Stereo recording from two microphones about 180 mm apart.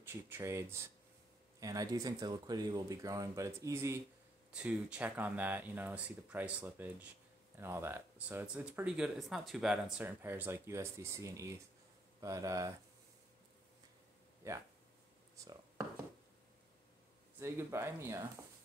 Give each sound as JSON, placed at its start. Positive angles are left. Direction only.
{"t": 0.0, "sound": "speech", "side_deg": -15}
{"t": 14.4, "sound": "speech", "side_deg": -15}
{"t": 15.3, "sound": "a sound", "side_deg": -20}
{"t": 17.4, "sound": "speech", "side_deg": -15}